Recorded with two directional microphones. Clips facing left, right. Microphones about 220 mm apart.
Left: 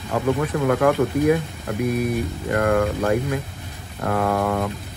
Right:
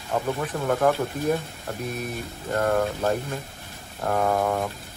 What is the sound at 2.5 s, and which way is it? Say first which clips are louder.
Speech: left 3 dB; 90° left.